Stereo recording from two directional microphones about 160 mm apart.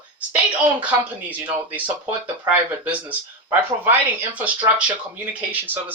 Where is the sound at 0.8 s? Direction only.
10° right (ahead or behind).